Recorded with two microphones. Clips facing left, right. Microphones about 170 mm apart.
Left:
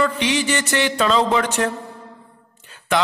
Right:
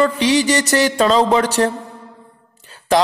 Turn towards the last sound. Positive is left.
turn(degrees=-35)  # may be behind; listen again after turning